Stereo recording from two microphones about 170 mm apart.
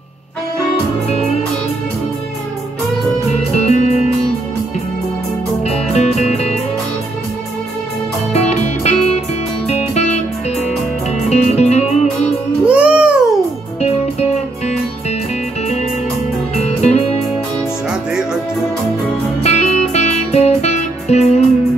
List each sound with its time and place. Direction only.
3.5 s music: 40° left (ahead or behind)
5.6 s music: 40° left (ahead or behind)
8.3 s music: 40° left (ahead or behind)
12.6 s music: 5° right (ahead or behind)
16.6 s music: 40° left (ahead or behind)
17.8 s music: 5° right (ahead or behind)
19.4 s music: 40° left (ahead or behind)